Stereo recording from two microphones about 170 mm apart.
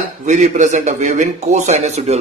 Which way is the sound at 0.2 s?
45° right (ahead or behind).